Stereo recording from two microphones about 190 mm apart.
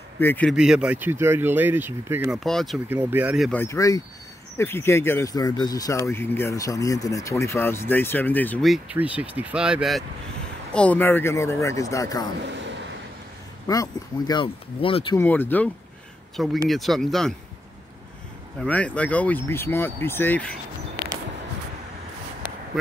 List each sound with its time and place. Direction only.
0.2 s speech: 10° left (ahead or behind)
0.6 s speech: 5° right (ahead or behind)
2.4 s speech: centre (ahead or behind)
2.9 s speech: 10° right (ahead or behind)
3.5 s speech: 15° left (ahead or behind)
13.7 s speech: 20° left (ahead or behind)
15.1 s speech: 10° left (ahead or behind)
18.6 s speech: 5° left (ahead or behind)